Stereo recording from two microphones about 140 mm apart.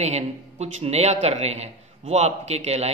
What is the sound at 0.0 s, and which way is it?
A man's voice, 50° right (ahead or behind).